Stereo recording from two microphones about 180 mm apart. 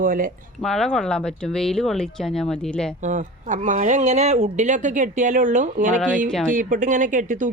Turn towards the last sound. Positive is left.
turn(degrees=-45)  # may be behind; listen again after turning